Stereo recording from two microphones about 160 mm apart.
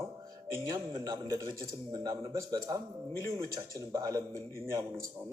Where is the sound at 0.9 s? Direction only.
20° right (ahead or behind).